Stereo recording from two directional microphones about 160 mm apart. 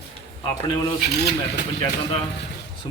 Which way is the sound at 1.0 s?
90° left.